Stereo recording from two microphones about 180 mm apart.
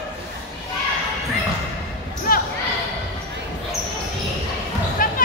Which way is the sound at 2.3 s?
50° left (ahead or behind).